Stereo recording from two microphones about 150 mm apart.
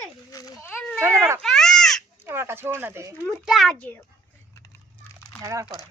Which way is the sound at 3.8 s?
10° left (ahead or behind).